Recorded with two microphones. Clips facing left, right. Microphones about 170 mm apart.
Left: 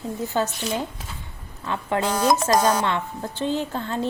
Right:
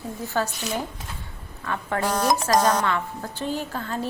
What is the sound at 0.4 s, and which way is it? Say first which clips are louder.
Speech: left 1 dB; 20° left (ahead or behind).